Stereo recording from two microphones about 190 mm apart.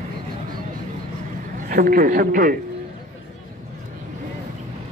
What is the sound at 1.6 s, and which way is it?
Speech, 50° right (ahead or behind).